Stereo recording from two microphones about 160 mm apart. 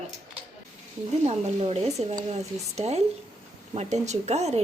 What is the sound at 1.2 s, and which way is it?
A woman's voice, 40° right (ahead or behind).